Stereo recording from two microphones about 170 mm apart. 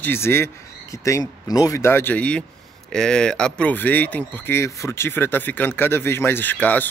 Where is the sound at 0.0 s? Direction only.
15° left (ahead or behind).